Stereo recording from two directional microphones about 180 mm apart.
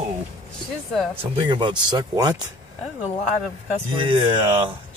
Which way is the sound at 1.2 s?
25° right (ahead or behind).